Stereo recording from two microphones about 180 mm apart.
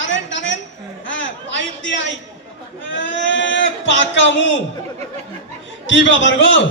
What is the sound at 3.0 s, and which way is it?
Sheep, 90° left.